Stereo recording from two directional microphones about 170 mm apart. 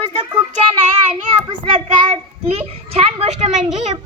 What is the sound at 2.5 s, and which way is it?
A child's voice, 35° right (ahead or behind).